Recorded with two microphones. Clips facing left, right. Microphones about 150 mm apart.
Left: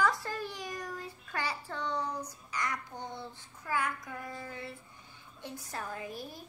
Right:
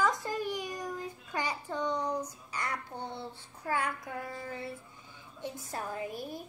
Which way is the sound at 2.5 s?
30° right (ahead or behind).